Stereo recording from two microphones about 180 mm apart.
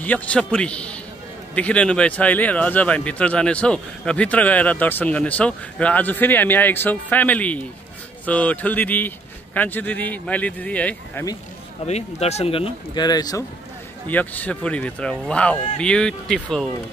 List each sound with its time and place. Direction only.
0.0 s speech: 10° left (ahead or behind)
11.8 s speech: 35° left (ahead or behind); by 13.4 s 20° left (ahead or behind)
14.0 s speech: 10° left (ahead or behind)